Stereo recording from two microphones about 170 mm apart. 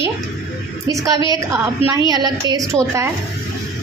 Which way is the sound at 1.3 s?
20° right (ahead or behind).